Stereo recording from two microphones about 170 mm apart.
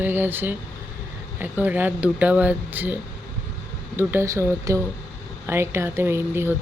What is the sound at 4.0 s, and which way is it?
Speech, 15° right (ahead or behind).